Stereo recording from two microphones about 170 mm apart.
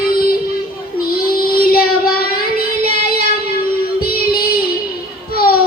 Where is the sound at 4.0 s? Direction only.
65° left (ahead or behind).